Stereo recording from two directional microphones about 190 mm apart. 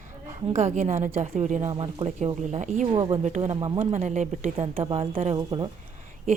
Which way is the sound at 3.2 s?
35° right (ahead or behind).